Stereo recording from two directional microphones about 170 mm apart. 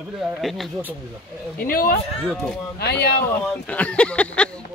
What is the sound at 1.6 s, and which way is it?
Speech, 60° left (ahead or behind).